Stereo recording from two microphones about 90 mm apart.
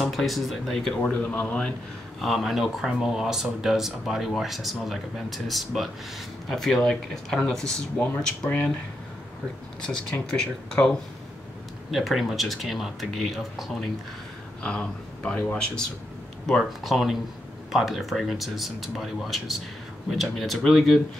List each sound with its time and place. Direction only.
0.0 s speech: centre (ahead or behind)
1.1 s speech: 15° left (ahead or behind)
2.2 s speech: centre (ahead or behind); by 8.7 s 15° left (ahead or behind)
10.3 s speech: 5° left (ahead or behind)